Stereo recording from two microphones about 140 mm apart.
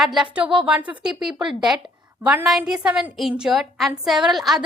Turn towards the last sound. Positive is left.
turn(degrees=0)  # may be behind; listen again after turning